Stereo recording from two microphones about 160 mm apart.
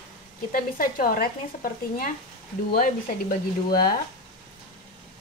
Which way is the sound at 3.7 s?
70° left (ahead or behind).